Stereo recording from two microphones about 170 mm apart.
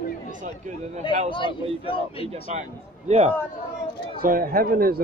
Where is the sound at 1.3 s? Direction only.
30° left (ahead or behind).